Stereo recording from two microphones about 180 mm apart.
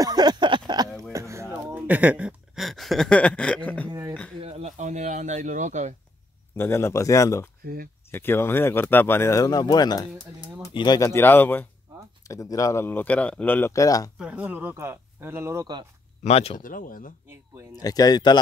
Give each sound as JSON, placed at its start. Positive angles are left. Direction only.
{"t": 0.0, "sound": "a sound", "side_deg": -20}
{"t": 1.1, "sound": "speech", "side_deg": -15}
{"t": 3.9, "sound": "beatboxing", "side_deg": -20}
{"t": 4.4, "sound": "speech", "side_deg": -35}
{"t": 6.5, "sound": "speech", "side_deg": 15}
{"t": 7.6, "sound": "speech", "side_deg": -55}
{"t": 8.1, "sound": "speech", "side_deg": 10}
{"t": 14.1, "sound": "speech", "side_deg": -5}
{"t": 16.3, "sound": "speech", "side_deg": 35}
{"t": 16.6, "sound": "speech", "side_deg": 50}
{"t": 17.7, "sound": "speech", "side_deg": 20}